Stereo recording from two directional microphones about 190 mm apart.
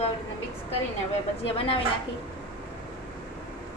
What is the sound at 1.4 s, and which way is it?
Speech, 30° left (ahead or behind).